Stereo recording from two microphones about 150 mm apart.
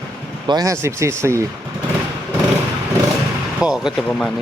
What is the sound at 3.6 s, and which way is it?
Speech, 5° right (ahead or behind).